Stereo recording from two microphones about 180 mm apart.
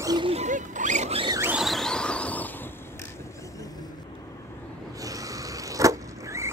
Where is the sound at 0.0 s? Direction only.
20° right (ahead or behind).